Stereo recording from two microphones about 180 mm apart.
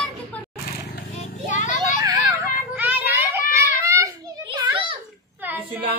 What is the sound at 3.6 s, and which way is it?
Children playing, 15° right (ahead or behind).